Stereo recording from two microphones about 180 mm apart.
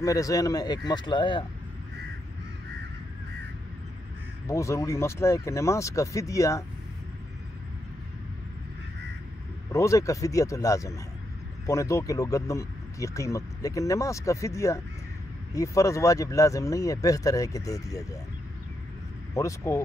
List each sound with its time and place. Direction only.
0.0 s speech: 20° left (ahead or behind)
4.5 s speech: 15° left (ahead or behind)
9.7 s speech: 15° left (ahead or behind)
19.3 s speech: 15° left (ahead or behind)